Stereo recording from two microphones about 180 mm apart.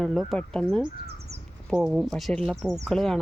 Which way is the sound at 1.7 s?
5° right (ahead or behind).